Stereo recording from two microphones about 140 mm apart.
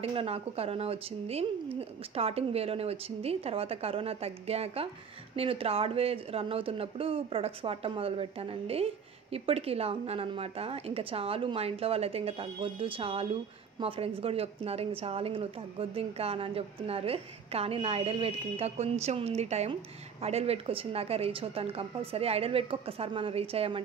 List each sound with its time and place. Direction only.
0.0 s speech: 45° right (ahead or behind)